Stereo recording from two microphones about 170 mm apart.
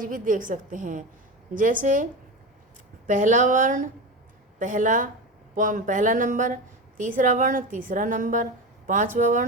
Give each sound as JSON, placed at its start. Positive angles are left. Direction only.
{"t": 0.0, "sound": "a woman's voice", "side_deg": -50}
{"t": 3.1, "sound": "a woman's voice", "side_deg": -50}